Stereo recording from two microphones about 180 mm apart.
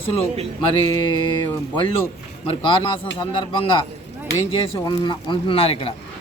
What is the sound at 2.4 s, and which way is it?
Speech, 30° left (ahead or behind).